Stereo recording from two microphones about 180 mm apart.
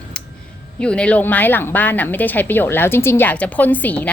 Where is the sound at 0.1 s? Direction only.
5° left (ahead or behind).